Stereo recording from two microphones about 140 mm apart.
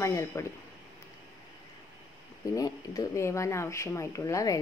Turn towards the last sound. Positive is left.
turn(degrees=25)  # may be behind; listen again after turning